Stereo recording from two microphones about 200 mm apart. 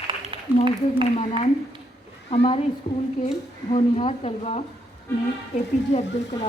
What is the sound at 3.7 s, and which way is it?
Speech, 30° left (ahead or behind).